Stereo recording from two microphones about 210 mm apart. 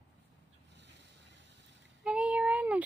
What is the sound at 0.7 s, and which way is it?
Vehicle, 55° right (ahead or behind).